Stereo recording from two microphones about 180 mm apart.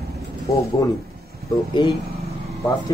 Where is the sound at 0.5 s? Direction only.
15° left (ahead or behind).